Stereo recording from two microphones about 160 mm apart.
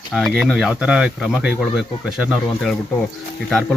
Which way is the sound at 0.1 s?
Centre (ahead or behind).